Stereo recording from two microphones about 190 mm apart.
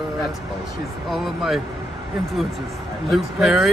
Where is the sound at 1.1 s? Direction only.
Centre (ahead or behind).